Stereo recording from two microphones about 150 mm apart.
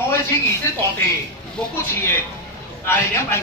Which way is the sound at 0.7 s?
20° left (ahead or behind).